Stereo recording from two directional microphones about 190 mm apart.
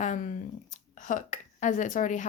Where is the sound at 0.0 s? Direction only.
40° left (ahead or behind).